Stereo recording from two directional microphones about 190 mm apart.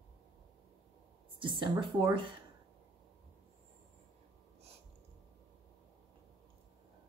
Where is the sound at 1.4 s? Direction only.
25° right (ahead or behind).